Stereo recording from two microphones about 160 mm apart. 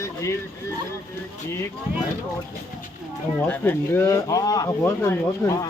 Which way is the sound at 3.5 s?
15° left (ahead or behind).